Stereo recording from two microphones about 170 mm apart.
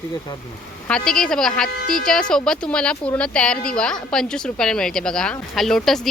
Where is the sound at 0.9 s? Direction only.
5° left (ahead or behind).